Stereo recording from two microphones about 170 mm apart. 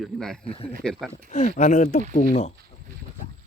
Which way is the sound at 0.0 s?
5° left (ahead or behind).